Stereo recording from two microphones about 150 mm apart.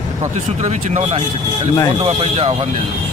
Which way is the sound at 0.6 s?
50° right (ahead or behind).